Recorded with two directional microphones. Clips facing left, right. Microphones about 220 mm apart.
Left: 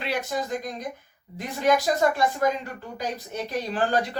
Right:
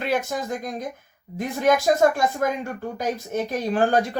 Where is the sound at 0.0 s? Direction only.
50° right (ahead or behind).